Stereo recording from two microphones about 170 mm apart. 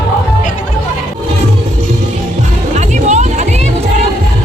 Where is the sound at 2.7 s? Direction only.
45° right (ahead or behind).